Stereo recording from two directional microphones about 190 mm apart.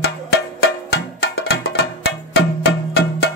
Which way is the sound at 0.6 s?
60° left (ahead or behind).